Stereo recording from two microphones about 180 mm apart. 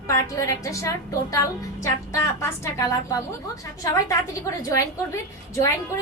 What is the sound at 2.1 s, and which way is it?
A woman's voice, 15° left (ahead or behind).